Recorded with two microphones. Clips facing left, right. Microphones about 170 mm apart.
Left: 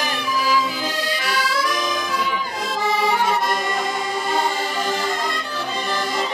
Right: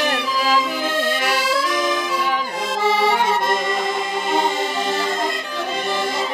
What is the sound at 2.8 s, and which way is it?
Accordion, 25° right (ahead or behind).